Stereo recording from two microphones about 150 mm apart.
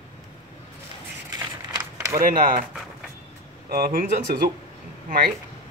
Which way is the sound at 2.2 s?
60° right (ahead or behind).